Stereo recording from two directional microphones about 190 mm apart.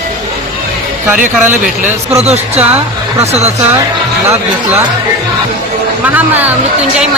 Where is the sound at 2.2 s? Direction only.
35° right (ahead or behind).